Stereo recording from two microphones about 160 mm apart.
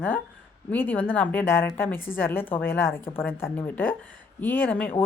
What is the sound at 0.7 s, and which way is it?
Speech, 10° left (ahead or behind).